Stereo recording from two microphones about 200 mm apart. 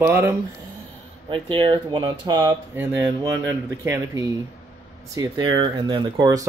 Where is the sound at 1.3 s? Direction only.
25° right (ahead or behind).